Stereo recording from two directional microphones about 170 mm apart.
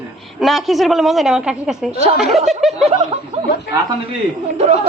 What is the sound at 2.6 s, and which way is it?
Speech, centre (ahead or behind).